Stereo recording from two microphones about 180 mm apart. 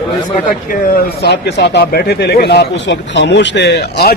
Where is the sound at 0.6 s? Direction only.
55° left (ahead or behind).